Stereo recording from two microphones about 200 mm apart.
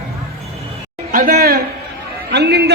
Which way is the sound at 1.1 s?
45° right (ahead or behind).